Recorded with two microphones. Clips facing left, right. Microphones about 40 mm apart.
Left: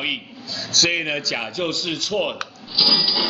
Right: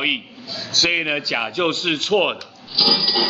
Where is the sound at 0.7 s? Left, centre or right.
Centre.